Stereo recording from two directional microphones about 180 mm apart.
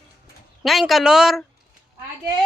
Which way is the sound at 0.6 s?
Centre (ahead or behind).